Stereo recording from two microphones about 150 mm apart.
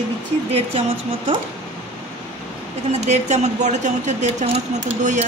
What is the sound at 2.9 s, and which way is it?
Speech, 50° right (ahead or behind).